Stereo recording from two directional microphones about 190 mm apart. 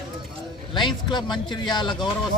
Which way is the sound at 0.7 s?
25° left (ahead or behind).